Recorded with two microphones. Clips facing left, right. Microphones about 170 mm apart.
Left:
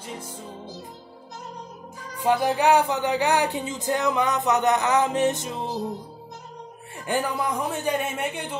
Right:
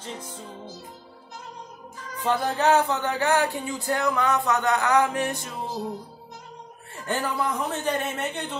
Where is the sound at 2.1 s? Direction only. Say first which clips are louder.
Left 3 dB; 10° left (ahead or behind).